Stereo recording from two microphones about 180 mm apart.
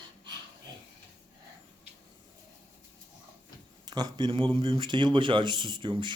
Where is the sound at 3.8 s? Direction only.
20° right (ahead or behind).